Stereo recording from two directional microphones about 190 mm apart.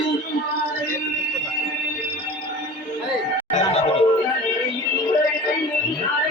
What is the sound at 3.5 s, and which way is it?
Music, 35° left (ahead or behind).